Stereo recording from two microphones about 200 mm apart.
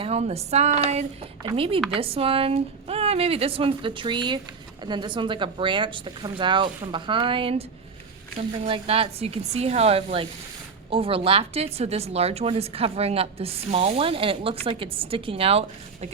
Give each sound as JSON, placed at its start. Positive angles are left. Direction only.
{"t": 0.0, "sound": "speech", "side_deg": -30}